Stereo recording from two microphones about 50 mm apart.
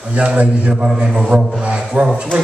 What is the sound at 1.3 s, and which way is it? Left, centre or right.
Speech, right.